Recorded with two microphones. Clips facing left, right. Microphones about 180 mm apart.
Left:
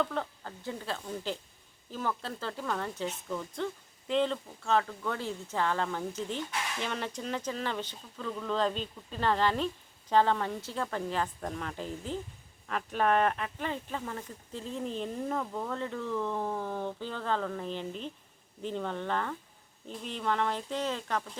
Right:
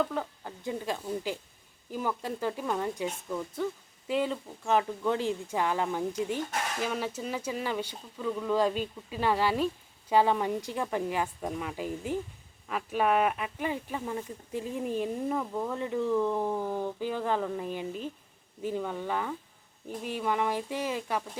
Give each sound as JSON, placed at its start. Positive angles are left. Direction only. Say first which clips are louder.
{"t": 0.0, "sound": "speech", "louder": "right 2 dB", "side_deg": -5}
{"t": 6.4, "sound": "speech", "louder": "right 3 dB", "side_deg": -45}
{"t": 6.8, "sound": "speech", "louder": "right 3 dB", "side_deg": -5}